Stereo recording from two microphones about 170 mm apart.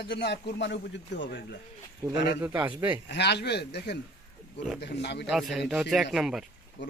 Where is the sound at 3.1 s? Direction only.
80° left.